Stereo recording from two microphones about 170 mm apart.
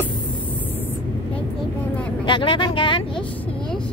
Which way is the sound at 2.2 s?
30° left (ahead or behind).